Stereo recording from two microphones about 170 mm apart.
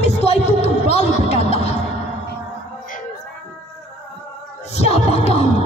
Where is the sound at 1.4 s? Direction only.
40° left (ahead or behind).